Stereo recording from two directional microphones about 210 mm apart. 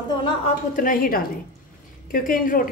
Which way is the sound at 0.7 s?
40° left (ahead or behind).